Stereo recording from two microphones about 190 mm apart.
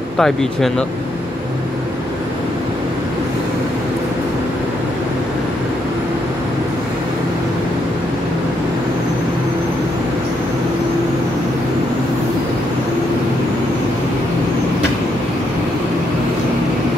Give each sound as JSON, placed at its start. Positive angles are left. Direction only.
{"t": 0.2, "sound": "speech", "side_deg": 0}